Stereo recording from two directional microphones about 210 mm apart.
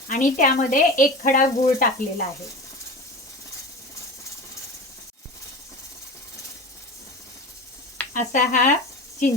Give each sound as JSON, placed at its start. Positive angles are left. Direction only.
{"t": 0.1, "sound": "speech", "side_deg": 40}
{"t": 8.1, "sound": "speech", "side_deg": 40}